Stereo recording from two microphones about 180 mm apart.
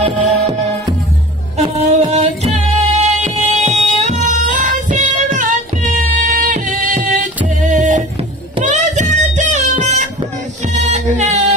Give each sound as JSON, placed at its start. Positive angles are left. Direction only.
{"t": 0.0, "sound": "music", "side_deg": -35}
{"t": 2.1, "sound": "music", "side_deg": -40}